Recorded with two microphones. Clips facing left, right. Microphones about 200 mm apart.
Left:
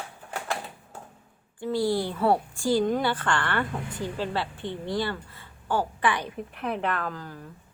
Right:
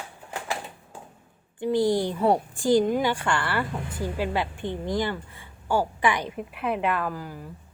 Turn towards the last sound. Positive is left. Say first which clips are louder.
# right 3 dB
turn(degrees=-10)  # may be behind; listen again after turning